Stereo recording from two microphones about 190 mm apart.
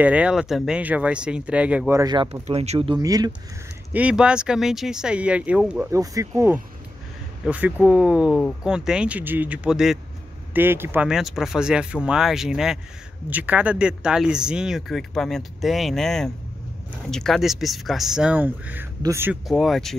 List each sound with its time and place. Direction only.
0.0 s speech: 5° right (ahead or behind)
2.4 s speech: 35° right (ahead or behind)
3.9 s speech: 5° right (ahead or behind)
5.9 s speech: 15° right (ahead or behind)
19.4 s speech: centre (ahead or behind)